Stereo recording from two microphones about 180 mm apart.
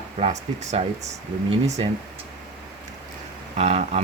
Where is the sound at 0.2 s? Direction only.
35° right (ahead or behind).